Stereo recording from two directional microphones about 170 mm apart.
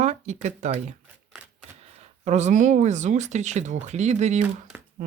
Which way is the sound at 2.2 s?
45° right (ahead or behind).